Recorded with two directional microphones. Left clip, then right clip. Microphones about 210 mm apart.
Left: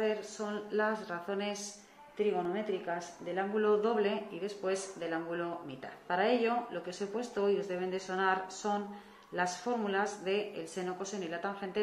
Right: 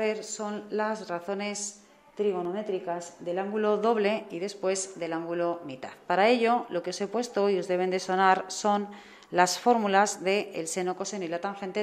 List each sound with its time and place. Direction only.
0.0 s a woman's voice: 35° right (ahead or behind)